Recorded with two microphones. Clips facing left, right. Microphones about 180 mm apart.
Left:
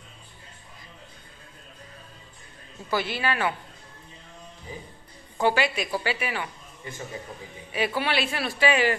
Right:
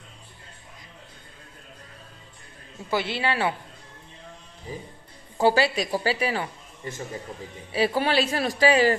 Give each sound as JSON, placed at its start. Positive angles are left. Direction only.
{"t": 2.9, "sound": "speech", "side_deg": -25}
{"t": 5.4, "sound": "speech", "side_deg": -35}